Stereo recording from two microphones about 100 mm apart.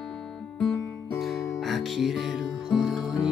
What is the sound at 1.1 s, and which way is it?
Music, centre (ahead or behind).